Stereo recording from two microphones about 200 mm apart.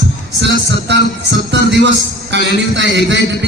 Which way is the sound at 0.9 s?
60° right (ahead or behind).